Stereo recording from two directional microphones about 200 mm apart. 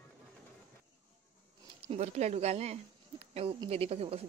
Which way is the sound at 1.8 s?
30° right (ahead or behind).